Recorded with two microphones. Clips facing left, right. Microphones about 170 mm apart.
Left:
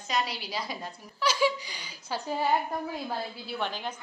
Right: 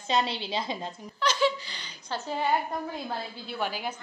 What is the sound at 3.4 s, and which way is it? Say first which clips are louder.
Speech: right 3 dB; 5° right (ahead or behind).